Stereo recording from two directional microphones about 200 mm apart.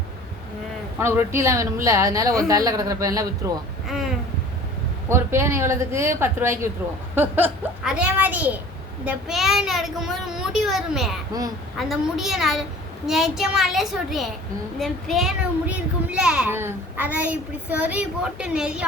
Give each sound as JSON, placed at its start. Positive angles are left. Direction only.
{"t": 0.9, "sound": "a child's voice", "side_deg": -15}
{"t": 3.8, "sound": "a child's voice", "side_deg": 0}
{"t": 5.0, "sound": "a child's voice", "side_deg": -15}